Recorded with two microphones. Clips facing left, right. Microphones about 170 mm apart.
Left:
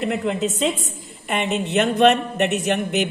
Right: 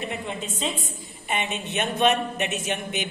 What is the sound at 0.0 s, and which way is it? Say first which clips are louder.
A woman's voice: left 9 dB; 85° left.